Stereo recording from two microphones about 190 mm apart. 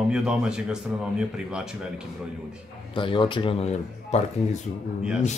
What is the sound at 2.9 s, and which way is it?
Speech, 25° left (ahead or behind).